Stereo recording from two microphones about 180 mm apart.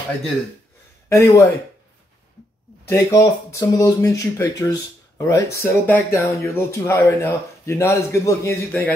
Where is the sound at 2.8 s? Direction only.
15° left (ahead or behind).